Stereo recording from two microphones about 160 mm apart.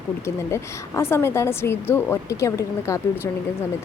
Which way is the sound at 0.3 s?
15° left (ahead or behind).